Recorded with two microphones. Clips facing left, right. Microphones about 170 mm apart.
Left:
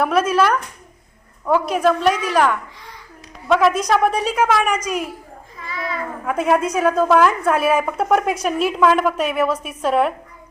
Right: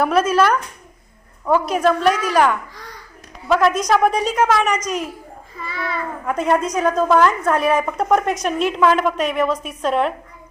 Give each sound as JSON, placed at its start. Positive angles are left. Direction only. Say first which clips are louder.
{"t": 0.0, "sound": "a woman's voice", "louder": "right 1 dB", "side_deg": 0}
{"t": 5.6, "sound": "a child's voice", "louder": "even", "side_deg": -65}
{"t": 6.2, "sound": "a woman's voice", "louder": "left 1 dB", "side_deg": 5}